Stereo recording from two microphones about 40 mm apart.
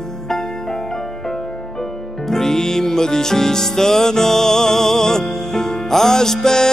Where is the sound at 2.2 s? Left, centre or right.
Centre.